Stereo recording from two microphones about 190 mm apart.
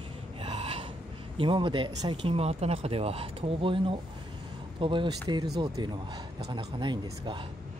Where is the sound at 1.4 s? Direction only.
25° right (ahead or behind).